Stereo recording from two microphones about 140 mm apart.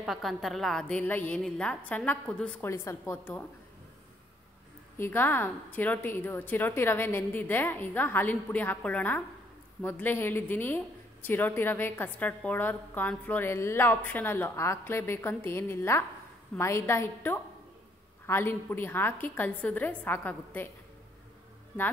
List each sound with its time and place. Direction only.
0.0 s a woman's voice: centre (ahead or behind)
2.6 s speech: 20° left (ahead or behind)
4.9 s a woman's voice: 15° left (ahead or behind)